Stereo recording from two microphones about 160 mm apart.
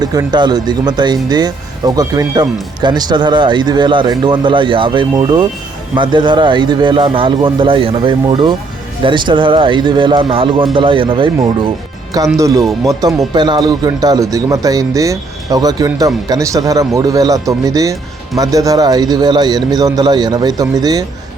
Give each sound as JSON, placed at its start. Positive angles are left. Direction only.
{"t": 0.0, "sound": "speech", "side_deg": -25}
{"t": 12.1, "sound": "speech", "side_deg": -20}